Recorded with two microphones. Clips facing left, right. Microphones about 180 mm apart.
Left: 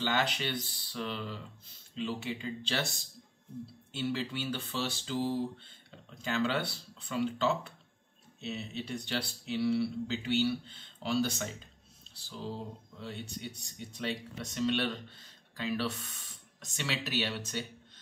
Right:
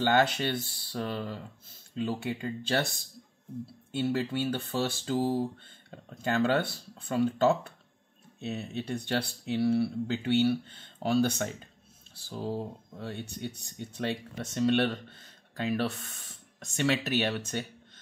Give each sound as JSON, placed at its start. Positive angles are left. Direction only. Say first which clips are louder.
{"t": 0.0, "sound": "speech", "louder": "right 7 dB", "side_deg": -50}
{"t": 3.9, "sound": "speech", "louder": "right 5 dB", "side_deg": -50}